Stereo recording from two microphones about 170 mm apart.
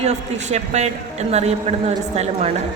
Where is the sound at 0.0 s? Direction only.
40° right (ahead or behind).